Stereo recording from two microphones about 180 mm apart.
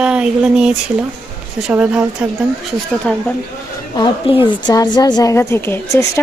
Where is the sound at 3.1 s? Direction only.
5° left (ahead or behind).